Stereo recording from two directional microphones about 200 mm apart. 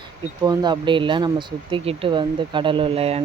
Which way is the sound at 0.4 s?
20° right (ahead or behind).